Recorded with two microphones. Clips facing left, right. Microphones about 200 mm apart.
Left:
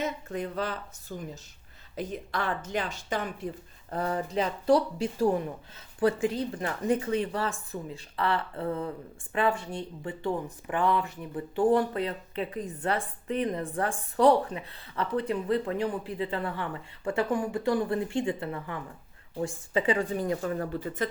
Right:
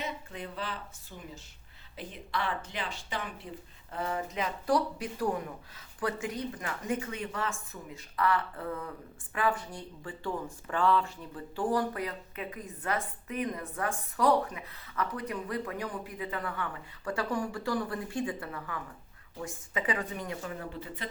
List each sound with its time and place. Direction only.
0.0 s speech: 45° left (ahead or behind)
2.0 s speech: 45° left (ahead or behind)
20.4 s speech: 45° left (ahead or behind)